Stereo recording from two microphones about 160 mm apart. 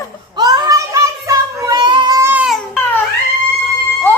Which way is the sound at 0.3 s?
25° right (ahead or behind).